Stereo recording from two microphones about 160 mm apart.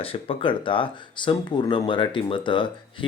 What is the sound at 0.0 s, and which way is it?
Speech, 35° left (ahead or behind).